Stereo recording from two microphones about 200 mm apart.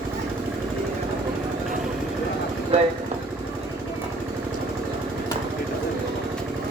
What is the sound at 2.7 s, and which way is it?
Speech, 30° right (ahead or behind).